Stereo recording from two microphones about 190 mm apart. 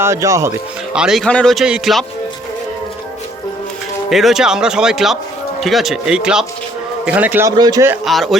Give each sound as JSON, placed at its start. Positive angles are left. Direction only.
{"t": 0.0, "sound": "a man's voice", "side_deg": -15}
{"t": 0.9, "sound": "a man's voice", "side_deg": 0}
{"t": 4.1, "sound": "a man's voice", "side_deg": 0}
{"t": 8.0, "sound": "a man's voice", "side_deg": 0}